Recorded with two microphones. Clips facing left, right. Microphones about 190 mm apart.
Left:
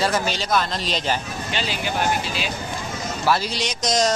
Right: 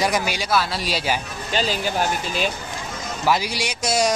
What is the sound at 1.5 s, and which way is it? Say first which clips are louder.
Speech: right 4 dB; 40° right (ahead or behind).